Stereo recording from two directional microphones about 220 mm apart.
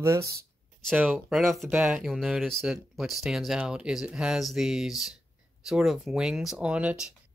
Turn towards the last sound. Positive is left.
turn(degrees=-5)  # may be behind; listen again after turning